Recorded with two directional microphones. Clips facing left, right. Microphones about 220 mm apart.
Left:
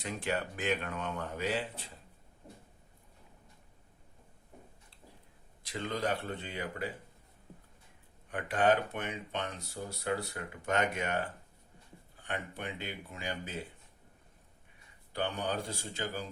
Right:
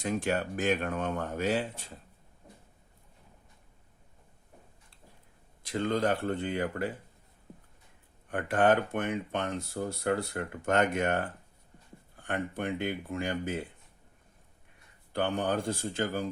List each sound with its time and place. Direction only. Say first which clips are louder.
0.0 s speech: right 5 dB; 45° right (ahead or behind)
5.6 s speech: right 6 dB; 50° right (ahead or behind)
8.3 s speech: right 3 dB; 50° right (ahead or behind)
15.1 s speech: right 5 dB; 50° right (ahead or behind)